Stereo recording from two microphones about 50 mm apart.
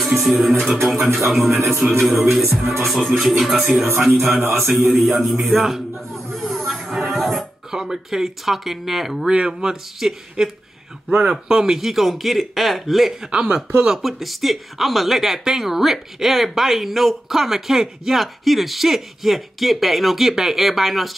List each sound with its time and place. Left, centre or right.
0.0 s speech: centre
4.3 s music: right
4.6 s a man's voice: centre
9.3 s speech: centre
11.1 s speech: right
11.4 s speech: centre
13.3 s speech: centre
13.9 s speech: centre